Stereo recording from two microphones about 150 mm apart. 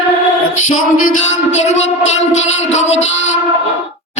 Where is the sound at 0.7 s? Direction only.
55° left (ahead or behind).